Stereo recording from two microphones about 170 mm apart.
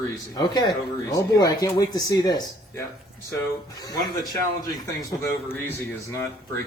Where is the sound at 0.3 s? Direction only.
25° left (ahead or behind).